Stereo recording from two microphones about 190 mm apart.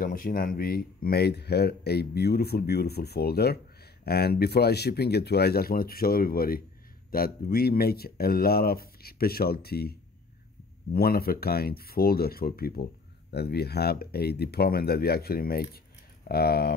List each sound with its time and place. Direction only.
0.0 s speech: 45° left (ahead or behind)